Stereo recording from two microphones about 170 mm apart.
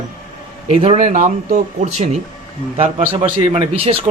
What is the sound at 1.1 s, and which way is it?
A man's voice, 45° right (ahead or behind).